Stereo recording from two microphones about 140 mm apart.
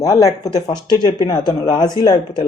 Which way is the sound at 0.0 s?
25° left (ahead or behind).